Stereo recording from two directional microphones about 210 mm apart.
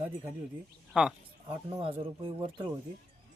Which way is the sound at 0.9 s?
5° right (ahead or behind).